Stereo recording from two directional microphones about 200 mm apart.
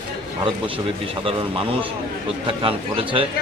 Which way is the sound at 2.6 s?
25° right (ahead or behind).